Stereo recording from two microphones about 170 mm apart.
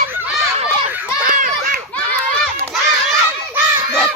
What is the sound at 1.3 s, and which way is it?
Children playing, 50° right (ahead or behind).